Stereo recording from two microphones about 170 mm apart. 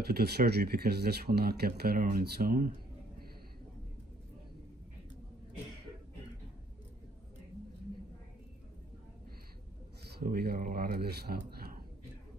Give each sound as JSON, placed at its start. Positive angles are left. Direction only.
{"t": 0.2, "sound": "speech", "side_deg": -65}
{"t": 10.2, "sound": "speech", "side_deg": -65}